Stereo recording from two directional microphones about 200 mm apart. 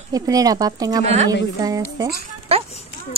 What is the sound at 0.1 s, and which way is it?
Speech, 20° right (ahead or behind).